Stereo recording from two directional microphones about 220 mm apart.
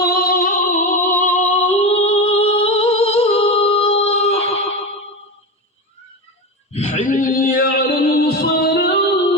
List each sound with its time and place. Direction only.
0.0 s music: 45° left (ahead or behind); by 4.9 s 30° left (ahead or behind)
6.7 s a sound: 35° left (ahead or behind)
8.4 s music: 45° left (ahead or behind)